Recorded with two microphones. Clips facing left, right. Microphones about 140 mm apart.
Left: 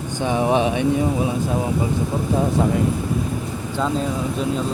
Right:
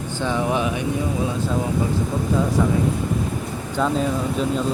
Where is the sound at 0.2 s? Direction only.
20° left (ahead or behind).